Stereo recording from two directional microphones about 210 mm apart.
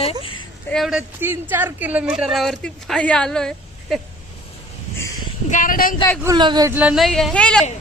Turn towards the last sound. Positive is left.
turn(degrees=5)  # may be behind; listen again after turning